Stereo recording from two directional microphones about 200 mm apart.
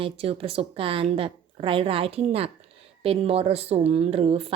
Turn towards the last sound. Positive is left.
turn(degrees=-30)  # may be behind; listen again after turning